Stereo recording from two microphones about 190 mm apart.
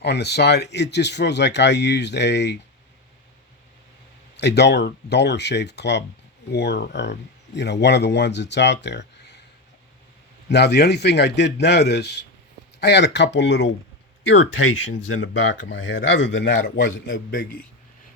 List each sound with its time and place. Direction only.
0.0 s speech: 60° left (ahead or behind)
4.4 s speech: 65° left (ahead or behind)
10.5 s a man's voice: 60° left (ahead or behind)